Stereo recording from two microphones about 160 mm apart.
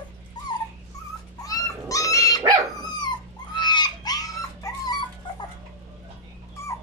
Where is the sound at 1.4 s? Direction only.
20° left (ahead or behind).